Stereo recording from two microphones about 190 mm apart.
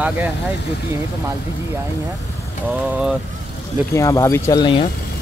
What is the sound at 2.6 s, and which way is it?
Speech, 5° right (ahead or behind).